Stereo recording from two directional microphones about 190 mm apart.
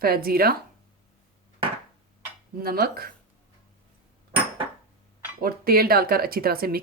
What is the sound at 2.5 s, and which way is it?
Speech, 50° right (ahead or behind).